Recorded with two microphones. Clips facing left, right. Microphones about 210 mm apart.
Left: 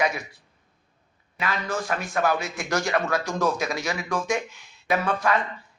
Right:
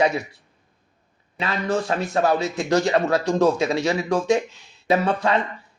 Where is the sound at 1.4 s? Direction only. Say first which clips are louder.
Right 5 dB; 30° right (ahead or behind).